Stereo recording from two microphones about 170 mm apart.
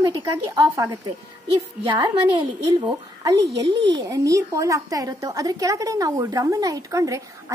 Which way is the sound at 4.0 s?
20° right (ahead or behind).